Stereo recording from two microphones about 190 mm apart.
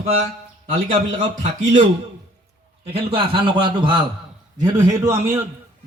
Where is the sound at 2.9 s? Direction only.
25° right (ahead or behind).